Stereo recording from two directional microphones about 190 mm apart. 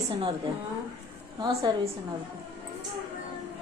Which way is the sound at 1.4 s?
25° right (ahead or behind).